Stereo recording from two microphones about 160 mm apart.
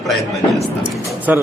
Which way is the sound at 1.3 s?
10° right (ahead or behind).